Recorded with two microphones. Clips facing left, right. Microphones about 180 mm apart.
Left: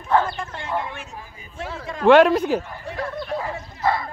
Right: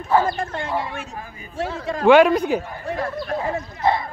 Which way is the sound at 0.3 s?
50° right (ahead or behind).